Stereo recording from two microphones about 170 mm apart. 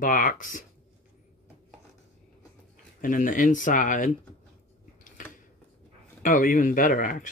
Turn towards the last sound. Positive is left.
turn(degrees=55)  # may be behind; listen again after turning